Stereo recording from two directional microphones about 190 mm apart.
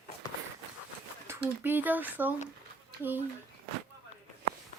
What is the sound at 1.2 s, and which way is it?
Speech, 10° right (ahead or behind).